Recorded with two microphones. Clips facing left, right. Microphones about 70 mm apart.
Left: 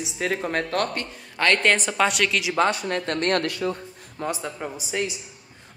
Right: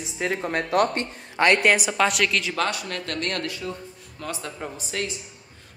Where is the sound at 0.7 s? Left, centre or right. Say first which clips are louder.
Right 4 dB; centre.